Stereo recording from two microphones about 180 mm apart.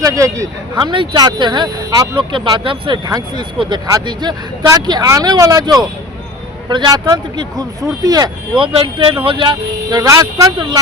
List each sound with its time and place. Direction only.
0.0 s speech: 20° right (ahead or behind)